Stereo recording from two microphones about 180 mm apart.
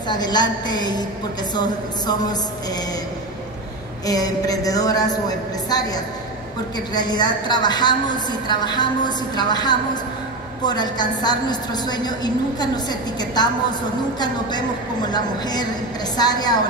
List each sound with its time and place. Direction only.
0.1 s a woman's voice: 25° left (ahead or behind)
4.0 s a woman's voice: 20° left (ahead or behind)
6.9 s a woman's voice: 25° left (ahead or behind)